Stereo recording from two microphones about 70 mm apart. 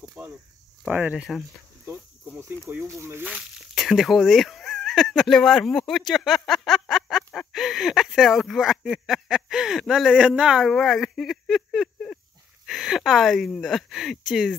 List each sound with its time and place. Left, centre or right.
0.2 s cricket: centre
1.1 s speech: centre
2.7 s speech: right
3.3 s a sound: centre
3.8 s speech: centre